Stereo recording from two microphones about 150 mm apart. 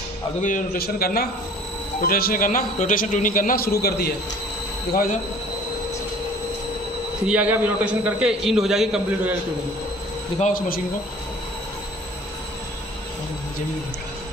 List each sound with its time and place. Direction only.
0.4 s a man's voice: 60° left (ahead or behind); by 1.3 s 90° left
2.0 s a man's voice: 80° left
7.2 s a man's voice: 10° right (ahead or behind)
10.4 s a man's voice: 65° left (ahead or behind)